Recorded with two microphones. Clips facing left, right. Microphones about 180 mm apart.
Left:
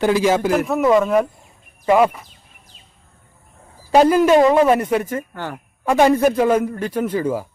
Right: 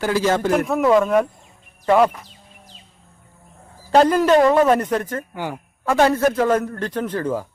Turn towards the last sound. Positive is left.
turn(degrees=10)  # may be behind; listen again after turning